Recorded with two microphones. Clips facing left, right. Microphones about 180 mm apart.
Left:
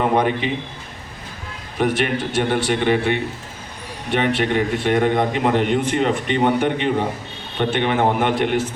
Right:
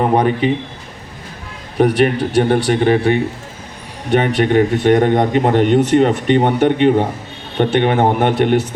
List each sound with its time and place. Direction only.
0.0 s speech: 40° right (ahead or behind)
1.8 s speech: 40° right (ahead or behind)